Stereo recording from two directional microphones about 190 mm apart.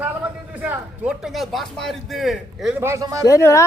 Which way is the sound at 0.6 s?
5° right (ahead or behind).